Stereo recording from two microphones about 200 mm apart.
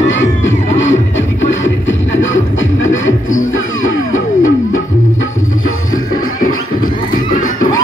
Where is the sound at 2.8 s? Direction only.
85° left.